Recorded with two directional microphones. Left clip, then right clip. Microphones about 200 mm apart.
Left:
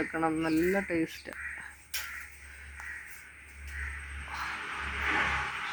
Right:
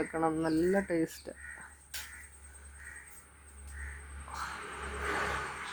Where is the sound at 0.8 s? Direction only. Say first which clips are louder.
Left 1 dB; 10° right (ahead or behind).